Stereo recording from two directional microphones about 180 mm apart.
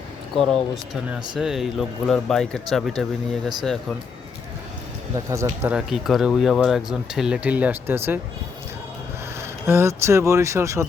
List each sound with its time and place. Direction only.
1.4 s speech: centre (ahead or behind)
5.3 s speech: 15° right (ahead or behind)
5.7 s speech: centre (ahead or behind)
9.4 s speech: 15° right (ahead or behind)